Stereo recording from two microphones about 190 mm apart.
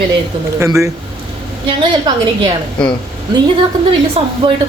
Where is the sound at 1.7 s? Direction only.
25° right (ahead or behind).